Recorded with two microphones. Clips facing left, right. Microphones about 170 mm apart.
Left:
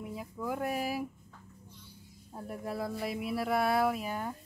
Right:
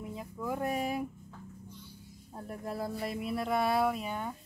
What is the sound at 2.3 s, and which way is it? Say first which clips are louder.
Speech: left 1 dB; 5° left (ahead or behind).